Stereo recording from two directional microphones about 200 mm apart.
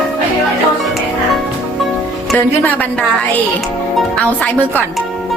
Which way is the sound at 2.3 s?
10° left (ahead or behind).